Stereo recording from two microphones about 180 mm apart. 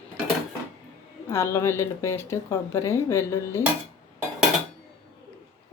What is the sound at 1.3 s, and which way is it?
Speech, 15° left (ahead or behind).